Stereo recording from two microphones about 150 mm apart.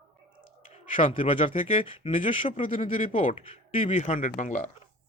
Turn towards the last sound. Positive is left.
turn(degrees=55)  # may be behind; listen again after turning